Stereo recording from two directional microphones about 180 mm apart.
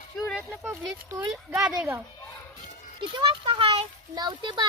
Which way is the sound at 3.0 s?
25° right (ahead or behind).